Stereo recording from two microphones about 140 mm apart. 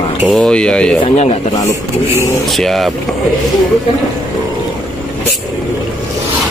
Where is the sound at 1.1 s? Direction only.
50° left (ahead or behind).